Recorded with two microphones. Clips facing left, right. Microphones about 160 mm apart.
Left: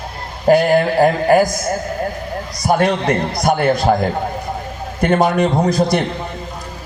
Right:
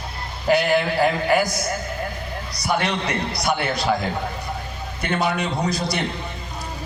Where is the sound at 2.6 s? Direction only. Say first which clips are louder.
Left 8 dB; 45° left (ahead or behind).